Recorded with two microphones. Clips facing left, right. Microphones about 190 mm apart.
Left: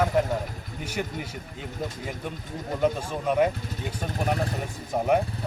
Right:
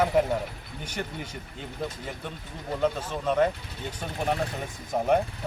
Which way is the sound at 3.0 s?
10° left (ahead or behind).